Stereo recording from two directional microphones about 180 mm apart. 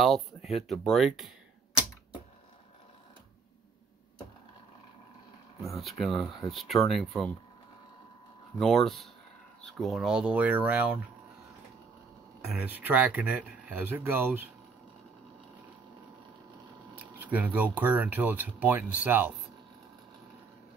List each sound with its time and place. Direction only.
0.0 s speech: centre (ahead or behind)
5.8 s speech: centre (ahead or behind)
8.5 s speech: centre (ahead or behind)
12.5 s speech: 10° right (ahead or behind)
17.2 s speech: 10° right (ahead or behind)